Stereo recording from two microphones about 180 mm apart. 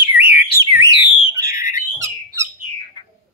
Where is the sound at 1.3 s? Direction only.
15° right (ahead or behind).